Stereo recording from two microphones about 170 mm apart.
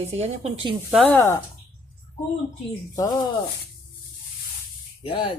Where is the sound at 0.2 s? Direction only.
40° right (ahead or behind).